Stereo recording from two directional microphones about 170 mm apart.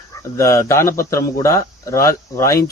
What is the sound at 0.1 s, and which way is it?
Speech, 15° left (ahead or behind).